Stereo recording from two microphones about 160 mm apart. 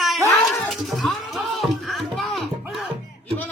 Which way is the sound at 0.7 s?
Centre (ahead or behind).